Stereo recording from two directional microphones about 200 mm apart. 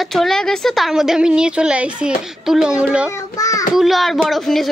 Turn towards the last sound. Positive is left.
turn(degrees=0)  # may be behind; listen again after turning